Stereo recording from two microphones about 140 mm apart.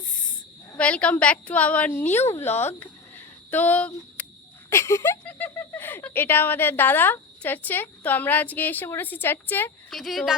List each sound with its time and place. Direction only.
0.0 s a sound: 5° left (ahead or behind)
0.8 s speech: 10° left (ahead or behind)
4.7 s speech: 20° left (ahead or behind)
9.9 s speech: centre (ahead or behind)